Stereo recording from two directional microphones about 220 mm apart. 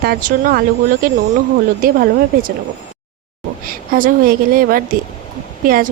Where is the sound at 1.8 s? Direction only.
40° right (ahead or behind).